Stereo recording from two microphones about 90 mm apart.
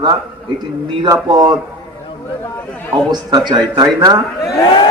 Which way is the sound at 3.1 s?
45° right (ahead or behind).